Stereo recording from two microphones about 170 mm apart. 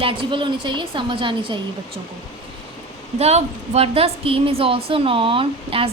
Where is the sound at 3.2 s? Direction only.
40° right (ahead or behind).